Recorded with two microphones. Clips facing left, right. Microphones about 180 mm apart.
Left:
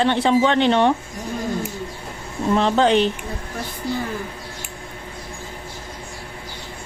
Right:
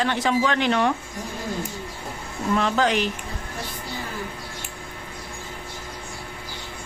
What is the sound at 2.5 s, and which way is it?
Speech, 30° left (ahead or behind).